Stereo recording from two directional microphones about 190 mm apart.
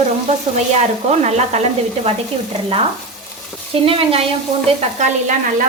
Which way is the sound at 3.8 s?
30° right (ahead or behind).